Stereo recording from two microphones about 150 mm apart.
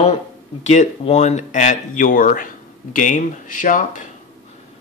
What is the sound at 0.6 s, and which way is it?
Speech, 50° left (ahead or behind).